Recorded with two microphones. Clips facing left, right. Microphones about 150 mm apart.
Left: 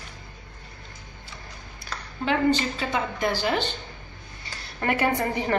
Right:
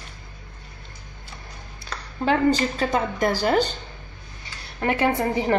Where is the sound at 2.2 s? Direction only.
40° right (ahead or behind).